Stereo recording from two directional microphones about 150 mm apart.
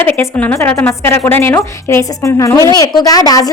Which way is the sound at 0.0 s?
10° left (ahead or behind).